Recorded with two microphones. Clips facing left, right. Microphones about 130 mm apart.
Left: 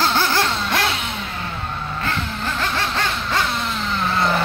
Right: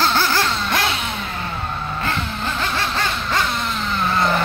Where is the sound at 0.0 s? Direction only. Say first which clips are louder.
Even; 15° left (ahead or behind).